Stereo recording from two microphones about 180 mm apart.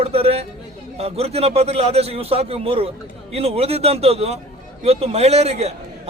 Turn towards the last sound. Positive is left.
turn(degrees=-35)  # may be behind; listen again after turning